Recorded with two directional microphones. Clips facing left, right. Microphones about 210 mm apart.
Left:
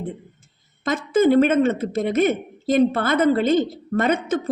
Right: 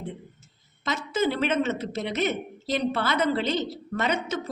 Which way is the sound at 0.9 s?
50° left (ahead or behind).